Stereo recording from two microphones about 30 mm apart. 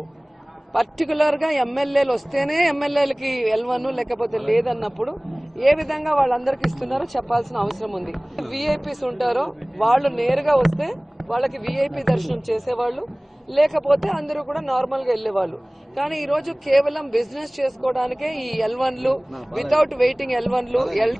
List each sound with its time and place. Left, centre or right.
0.7 s a man's voice: centre